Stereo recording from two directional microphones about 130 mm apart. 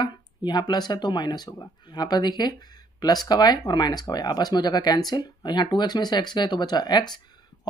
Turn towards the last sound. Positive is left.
turn(degrees=35)  # may be behind; listen again after turning